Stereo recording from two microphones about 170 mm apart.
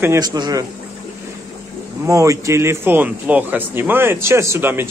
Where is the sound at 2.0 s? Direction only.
20° right (ahead or behind).